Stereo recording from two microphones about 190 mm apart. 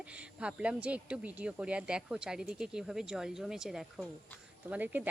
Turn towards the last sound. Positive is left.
turn(degrees=-10)  # may be behind; listen again after turning